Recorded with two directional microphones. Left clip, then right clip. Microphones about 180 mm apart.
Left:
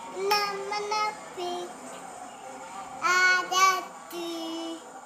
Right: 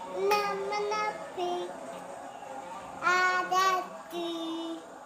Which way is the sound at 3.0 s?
15° left (ahead or behind).